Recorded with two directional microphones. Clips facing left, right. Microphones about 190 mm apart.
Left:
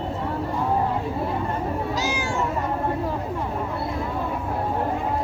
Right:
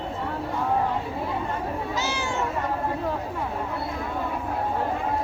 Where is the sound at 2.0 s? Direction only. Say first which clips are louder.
Left 3 dB; 10° left (ahead or behind).